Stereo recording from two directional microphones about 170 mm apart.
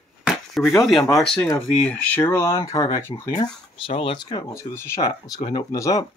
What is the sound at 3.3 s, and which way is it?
Speech, 25° left (ahead or behind).